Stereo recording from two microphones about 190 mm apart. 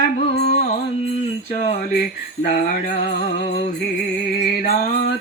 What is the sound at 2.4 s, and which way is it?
Jingle bell, 55° left (ahead or behind).